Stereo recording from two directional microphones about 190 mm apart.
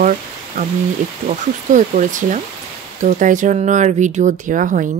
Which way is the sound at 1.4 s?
40° right (ahead or behind).